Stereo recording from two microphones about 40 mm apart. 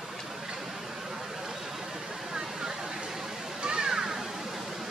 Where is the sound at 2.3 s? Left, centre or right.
Centre.